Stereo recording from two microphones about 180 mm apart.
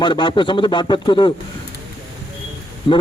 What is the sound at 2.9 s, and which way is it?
Speech, 30° left (ahead or behind).